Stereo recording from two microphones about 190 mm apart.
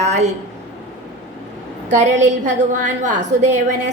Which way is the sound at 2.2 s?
40° right (ahead or behind).